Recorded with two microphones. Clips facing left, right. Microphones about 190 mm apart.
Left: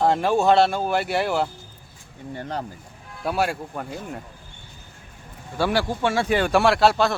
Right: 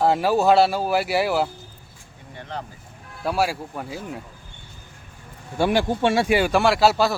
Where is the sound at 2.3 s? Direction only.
40° left (ahead or behind).